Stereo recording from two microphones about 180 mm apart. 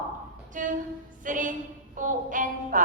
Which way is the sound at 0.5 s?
45° right (ahead or behind).